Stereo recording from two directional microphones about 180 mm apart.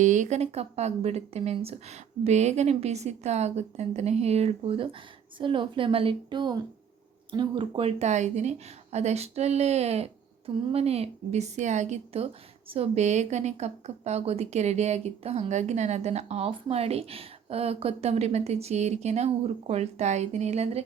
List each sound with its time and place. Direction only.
0.0 s a woman's voice: 40° right (ahead or behind)